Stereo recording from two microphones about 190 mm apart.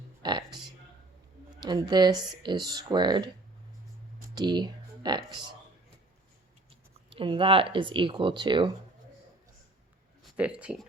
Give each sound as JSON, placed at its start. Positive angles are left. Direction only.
{"t": 0.2, "sound": "music", "side_deg": -25}
{"t": 1.6, "sound": "speech", "side_deg": -20}
{"t": 4.4, "sound": "speech", "side_deg": -20}
{"t": 7.1, "sound": "speech", "side_deg": -25}
{"t": 10.3, "sound": "speech", "side_deg": -5}